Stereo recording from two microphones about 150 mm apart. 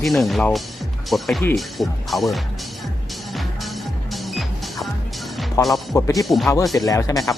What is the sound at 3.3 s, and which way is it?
Music, centre (ahead or behind).